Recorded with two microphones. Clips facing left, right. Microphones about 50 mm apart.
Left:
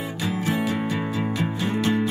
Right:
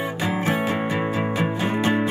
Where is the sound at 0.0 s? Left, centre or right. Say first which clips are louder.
Right 3 dB; right.